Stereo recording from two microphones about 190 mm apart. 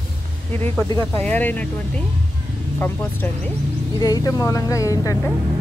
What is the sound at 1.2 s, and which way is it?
Speech, 10° left (ahead or behind).